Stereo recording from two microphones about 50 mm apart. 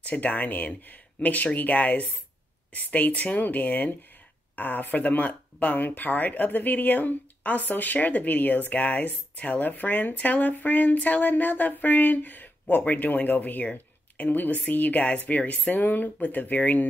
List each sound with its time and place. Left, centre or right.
0.0 s speech: left